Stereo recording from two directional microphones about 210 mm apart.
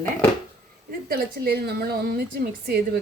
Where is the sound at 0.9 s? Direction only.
45° right (ahead or behind).